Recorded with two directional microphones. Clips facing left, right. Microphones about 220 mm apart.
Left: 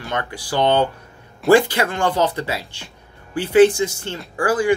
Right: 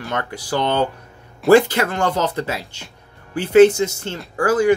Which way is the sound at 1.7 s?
45° right (ahead or behind).